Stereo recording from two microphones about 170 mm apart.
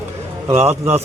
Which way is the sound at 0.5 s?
40° right (ahead or behind).